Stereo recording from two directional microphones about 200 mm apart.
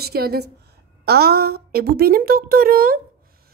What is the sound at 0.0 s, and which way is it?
Speech, 50° right (ahead or behind).